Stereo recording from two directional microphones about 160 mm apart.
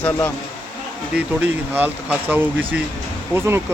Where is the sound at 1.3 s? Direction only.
10° right (ahead or behind).